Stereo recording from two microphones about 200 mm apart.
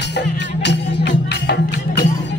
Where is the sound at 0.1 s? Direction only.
60° left (ahead or behind).